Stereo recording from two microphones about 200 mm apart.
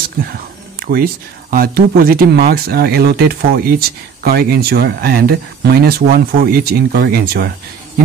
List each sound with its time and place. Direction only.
0.2 s speech: 50° right (ahead or behind)